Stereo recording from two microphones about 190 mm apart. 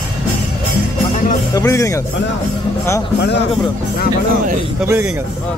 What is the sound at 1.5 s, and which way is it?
Speech, 15° left (ahead or behind).